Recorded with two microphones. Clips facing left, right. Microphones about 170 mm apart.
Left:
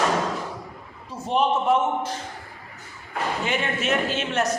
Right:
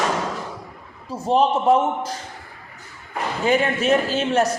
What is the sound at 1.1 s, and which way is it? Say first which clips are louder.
A man's voice: right 4 dB; 35° right (ahead or behind).